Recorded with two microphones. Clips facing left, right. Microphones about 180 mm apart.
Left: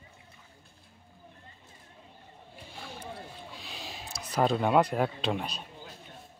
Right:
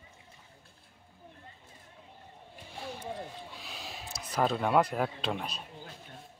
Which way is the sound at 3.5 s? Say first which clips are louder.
Left 1 dB; centre (ahead or behind).